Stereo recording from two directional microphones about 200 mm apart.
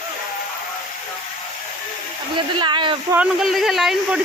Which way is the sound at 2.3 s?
25° right (ahead or behind).